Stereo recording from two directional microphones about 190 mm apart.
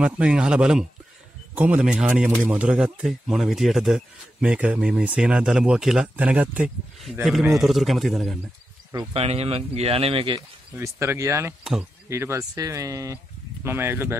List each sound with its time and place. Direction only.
0.0 s speech: 5° right (ahead or behind)
9.1 s speech: 30° right (ahead or behind)
10.8 s speech: 15° right (ahead or behind)